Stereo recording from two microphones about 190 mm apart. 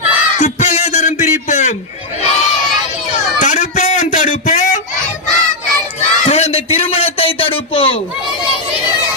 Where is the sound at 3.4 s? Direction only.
40° left (ahead or behind).